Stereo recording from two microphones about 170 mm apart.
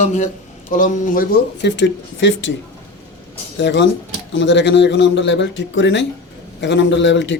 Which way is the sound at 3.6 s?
90° left.